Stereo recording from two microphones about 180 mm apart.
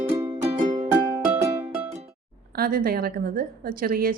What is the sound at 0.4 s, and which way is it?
Music, 40° right (ahead or behind).